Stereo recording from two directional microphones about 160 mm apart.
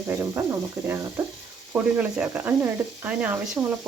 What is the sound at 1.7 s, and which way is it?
Speech, 10° right (ahead or behind).